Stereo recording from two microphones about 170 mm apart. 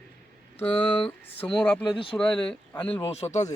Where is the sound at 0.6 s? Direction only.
35° left (ahead or behind).